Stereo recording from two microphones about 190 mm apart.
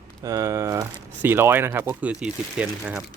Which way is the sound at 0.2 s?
15° right (ahead or behind).